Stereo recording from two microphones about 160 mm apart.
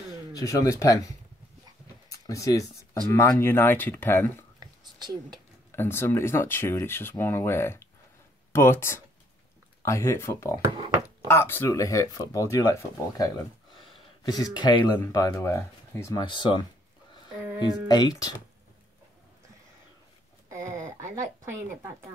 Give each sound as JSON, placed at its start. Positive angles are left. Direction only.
{"t": 0.3, "sound": "speech", "side_deg": 20}
{"t": 2.0, "sound": "a sound", "side_deg": 20}
{"t": 3.1, "sound": "speech", "side_deg": 15}
{"t": 4.6, "sound": "whispering", "side_deg": -25}
{"t": 5.7, "sound": "speech", "side_deg": 15}
{"t": 14.2, "sound": "speech", "side_deg": 25}
{"t": 17.6, "sound": "speech", "side_deg": 25}
{"t": 21.0, "sound": "a woman's voice", "side_deg": -20}